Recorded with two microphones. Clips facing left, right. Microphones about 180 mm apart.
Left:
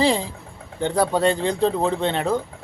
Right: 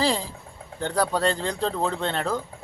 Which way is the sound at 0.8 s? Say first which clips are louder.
Left 4 dB; 20° left (ahead or behind).